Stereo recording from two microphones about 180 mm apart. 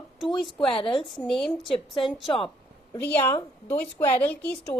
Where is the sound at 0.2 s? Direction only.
Centre (ahead or behind).